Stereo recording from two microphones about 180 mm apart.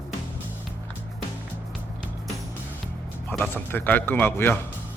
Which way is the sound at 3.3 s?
10° left (ahead or behind).